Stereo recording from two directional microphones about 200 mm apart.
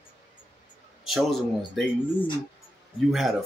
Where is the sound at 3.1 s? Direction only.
Centre (ahead or behind).